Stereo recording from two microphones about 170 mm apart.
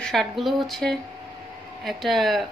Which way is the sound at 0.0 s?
5° left (ahead or behind).